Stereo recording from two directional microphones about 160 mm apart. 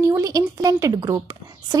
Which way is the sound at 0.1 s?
20° right (ahead or behind).